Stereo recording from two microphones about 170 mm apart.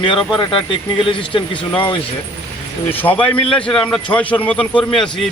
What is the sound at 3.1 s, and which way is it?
Speech, 10° left (ahead or behind).